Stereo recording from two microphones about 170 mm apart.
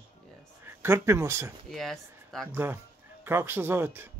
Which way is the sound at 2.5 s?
10° right (ahead or behind).